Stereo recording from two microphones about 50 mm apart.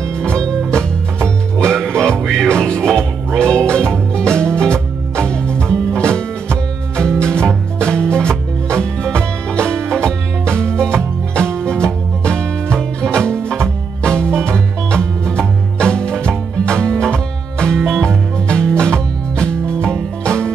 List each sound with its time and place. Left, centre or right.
0.2 s music: centre